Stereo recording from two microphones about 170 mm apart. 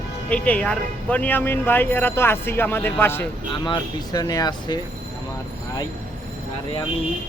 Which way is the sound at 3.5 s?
30° left (ahead or behind).